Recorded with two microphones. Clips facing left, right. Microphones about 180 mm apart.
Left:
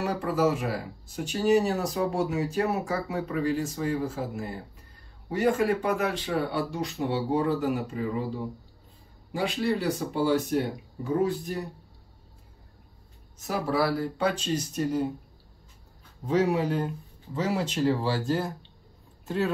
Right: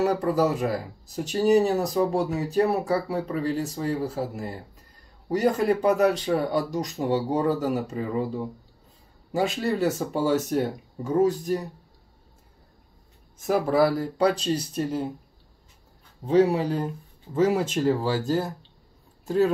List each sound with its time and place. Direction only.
0.0 s speech: 40° right (ahead or behind)
9.3 s speech: 40° right (ahead or behind)
13.4 s speech: 50° right (ahead or behind); by 15.0 s 30° right (ahead or behind)
16.3 s speech: 35° right (ahead or behind)
17.3 s speech: 50° right (ahead or behind)